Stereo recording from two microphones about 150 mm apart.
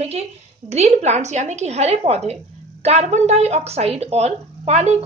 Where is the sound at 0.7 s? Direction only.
45° right (ahead or behind).